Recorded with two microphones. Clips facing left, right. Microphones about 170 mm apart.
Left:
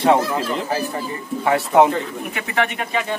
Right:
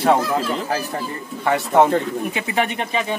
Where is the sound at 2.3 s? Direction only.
20° right (ahead or behind).